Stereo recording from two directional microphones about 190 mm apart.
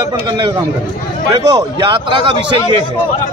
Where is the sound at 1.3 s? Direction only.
25° right (ahead or behind).